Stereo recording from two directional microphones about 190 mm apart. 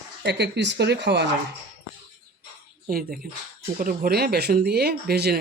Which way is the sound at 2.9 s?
50° right (ahead or behind).